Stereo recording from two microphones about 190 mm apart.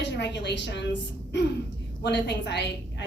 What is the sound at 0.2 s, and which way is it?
Speech, 65° left (ahead or behind).